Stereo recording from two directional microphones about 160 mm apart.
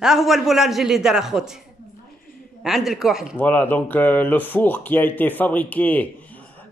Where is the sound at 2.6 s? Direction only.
5° right (ahead or behind).